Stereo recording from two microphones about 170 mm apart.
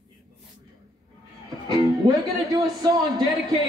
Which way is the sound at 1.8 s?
25° right (ahead or behind).